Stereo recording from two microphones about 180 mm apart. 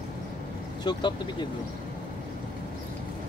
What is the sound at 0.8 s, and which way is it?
Speech, 25° left (ahead or behind).